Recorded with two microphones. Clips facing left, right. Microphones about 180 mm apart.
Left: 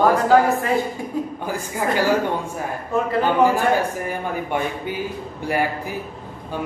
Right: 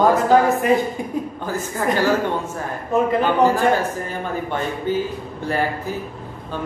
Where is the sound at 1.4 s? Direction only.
15° left (ahead or behind).